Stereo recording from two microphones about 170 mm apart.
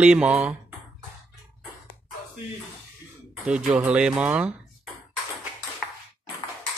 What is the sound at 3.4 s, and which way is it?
Speech, 5° right (ahead or behind).